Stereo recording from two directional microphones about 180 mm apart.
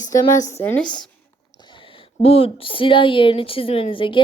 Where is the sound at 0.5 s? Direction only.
10° left (ahead or behind).